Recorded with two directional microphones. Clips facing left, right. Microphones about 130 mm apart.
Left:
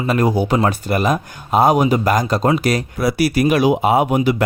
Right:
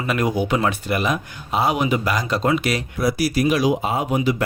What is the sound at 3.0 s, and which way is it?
Speech, 65° left (ahead or behind).